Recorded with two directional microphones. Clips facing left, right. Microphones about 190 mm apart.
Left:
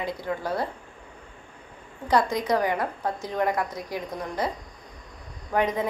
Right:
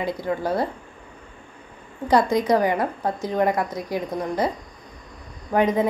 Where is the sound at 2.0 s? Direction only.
10° right (ahead or behind).